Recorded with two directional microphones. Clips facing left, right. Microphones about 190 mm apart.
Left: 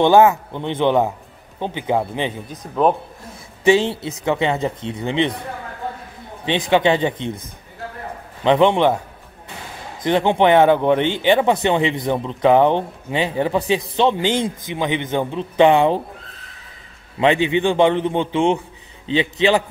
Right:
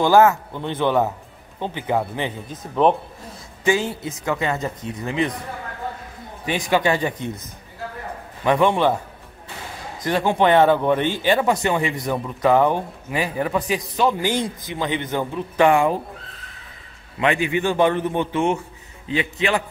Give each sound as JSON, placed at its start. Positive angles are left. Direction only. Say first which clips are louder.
{"t": 0.0, "sound": "speech", "louder": "left 2 dB", "side_deg": 20}
{"t": 2.6, "sound": "speech", "louder": "even", "side_deg": 0}
{"t": 3.6, "sound": "speech", "louder": "left 5 dB", "side_deg": 25}
{"t": 6.4, "sound": "speech", "louder": "left 4 dB", "side_deg": 25}
{"t": 8.5, "sound": "speech", "louder": "left 3 dB", "side_deg": 20}
{"t": 10.0, "sound": "speech", "louder": "left 3 dB", "side_deg": 20}
{"t": 17.2, "sound": "speech", "louder": "left 4 dB", "side_deg": 25}
{"t": 19.0, "sound": "speech", "louder": "left 5 dB", "side_deg": 30}